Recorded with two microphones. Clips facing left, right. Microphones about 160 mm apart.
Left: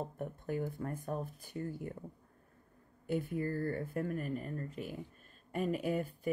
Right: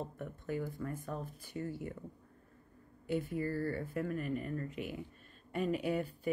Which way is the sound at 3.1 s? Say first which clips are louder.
Even; 50° left (ahead or behind).